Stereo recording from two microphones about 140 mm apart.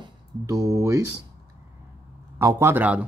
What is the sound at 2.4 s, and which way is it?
Speech, 15° right (ahead or behind).